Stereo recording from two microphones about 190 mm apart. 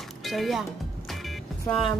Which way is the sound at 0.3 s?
Centre (ahead or behind).